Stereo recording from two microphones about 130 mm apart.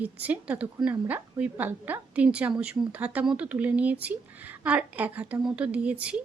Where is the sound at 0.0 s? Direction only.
10° right (ahead or behind).